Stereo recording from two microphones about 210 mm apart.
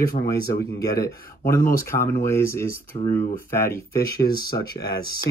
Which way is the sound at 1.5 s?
15° left (ahead or behind).